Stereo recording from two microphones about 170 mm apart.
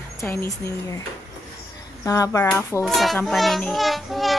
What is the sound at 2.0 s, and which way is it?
Speech, 20° left (ahead or behind).